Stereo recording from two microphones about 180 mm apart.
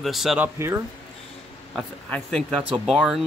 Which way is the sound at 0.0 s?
Centre (ahead or behind).